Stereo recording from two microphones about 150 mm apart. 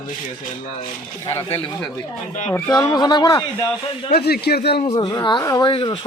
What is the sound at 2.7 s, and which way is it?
Speech, 25° left (ahead or behind).